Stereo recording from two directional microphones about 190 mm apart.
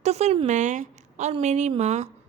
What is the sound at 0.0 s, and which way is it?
A woman's voice, 35° right (ahead or behind).